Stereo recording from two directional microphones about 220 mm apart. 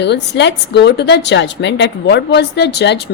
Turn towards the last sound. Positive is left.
turn(degrees=50)  # may be behind; listen again after turning